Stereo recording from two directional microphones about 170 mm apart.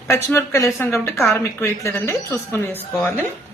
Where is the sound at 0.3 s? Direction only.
15° left (ahead or behind).